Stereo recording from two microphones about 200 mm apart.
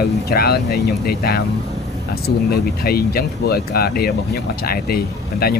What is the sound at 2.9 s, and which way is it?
Speech, 50° left (ahead or behind).